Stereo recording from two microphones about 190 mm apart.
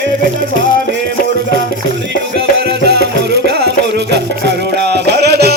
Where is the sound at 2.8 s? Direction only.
60° right (ahead or behind).